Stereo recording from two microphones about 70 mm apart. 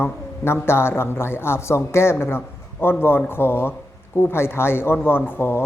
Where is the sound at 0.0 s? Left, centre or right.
Left.